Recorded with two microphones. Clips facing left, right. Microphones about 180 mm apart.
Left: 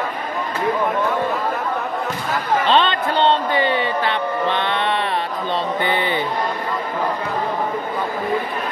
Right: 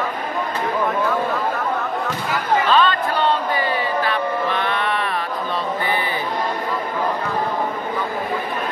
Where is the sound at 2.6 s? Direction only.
25° left (ahead or behind).